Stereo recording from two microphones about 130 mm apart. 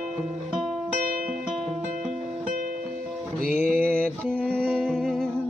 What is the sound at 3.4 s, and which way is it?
Music, 90° right.